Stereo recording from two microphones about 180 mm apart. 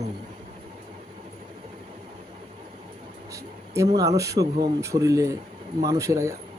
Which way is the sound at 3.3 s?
15° right (ahead or behind).